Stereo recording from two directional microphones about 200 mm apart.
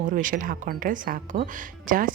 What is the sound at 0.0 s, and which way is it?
Speech, 40° right (ahead or behind).